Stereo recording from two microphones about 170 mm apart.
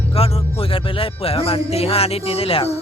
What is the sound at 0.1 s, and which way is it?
Speech, 35° left (ahead or behind).